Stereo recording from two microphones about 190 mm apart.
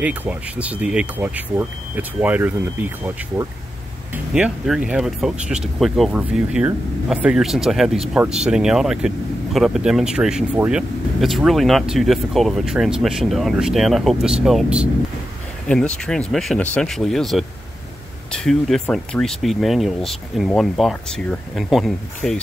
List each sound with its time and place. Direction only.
0.0 s speech: 5° right (ahead or behind)
4.1 s speech: 5° right (ahead or behind)